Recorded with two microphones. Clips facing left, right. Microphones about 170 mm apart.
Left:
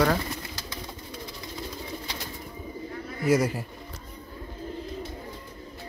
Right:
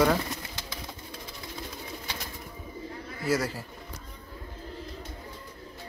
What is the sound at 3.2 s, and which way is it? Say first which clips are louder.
Speech: left 5 dB; 15° left (ahead or behind).